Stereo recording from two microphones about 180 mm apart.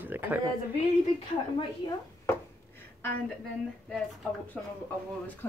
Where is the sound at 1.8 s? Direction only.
25° left (ahead or behind).